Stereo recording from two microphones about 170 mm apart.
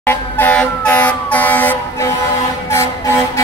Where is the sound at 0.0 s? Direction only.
10° left (ahead or behind).